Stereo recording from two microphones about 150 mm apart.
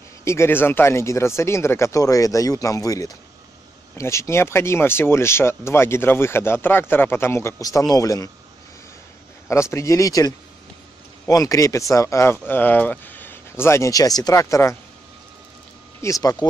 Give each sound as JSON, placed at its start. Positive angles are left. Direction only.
{"t": 0.2, "sound": "speech", "side_deg": 20}
{"t": 9.5, "sound": "speech", "side_deg": 20}
{"t": 16.0, "sound": "speech", "side_deg": 20}